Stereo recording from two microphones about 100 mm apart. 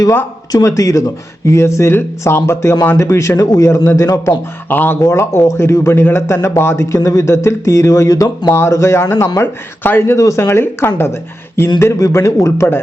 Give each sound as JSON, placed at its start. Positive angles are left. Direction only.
{"t": 0.5, "sound": "a man's voice", "side_deg": 35}
{"t": 4.7, "sound": "speech", "side_deg": 20}